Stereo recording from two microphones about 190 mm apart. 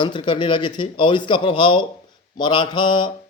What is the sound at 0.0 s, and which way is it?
A man's voice, 25° left (ahead or behind).